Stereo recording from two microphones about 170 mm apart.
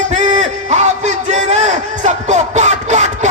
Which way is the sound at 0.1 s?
45° right (ahead or behind).